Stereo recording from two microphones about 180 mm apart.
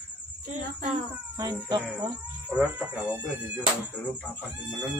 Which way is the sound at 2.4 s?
5° right (ahead or behind).